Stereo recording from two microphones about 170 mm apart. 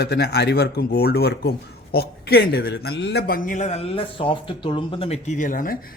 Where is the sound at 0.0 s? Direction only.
70° left (ahead or behind).